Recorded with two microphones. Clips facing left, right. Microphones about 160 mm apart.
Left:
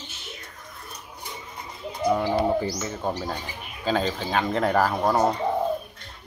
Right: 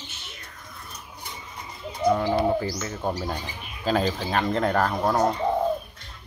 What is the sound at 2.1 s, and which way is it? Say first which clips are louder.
Speech: even; 5° left (ahead or behind).